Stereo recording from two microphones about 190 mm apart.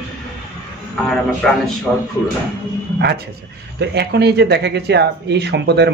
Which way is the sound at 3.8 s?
60° right (ahead or behind).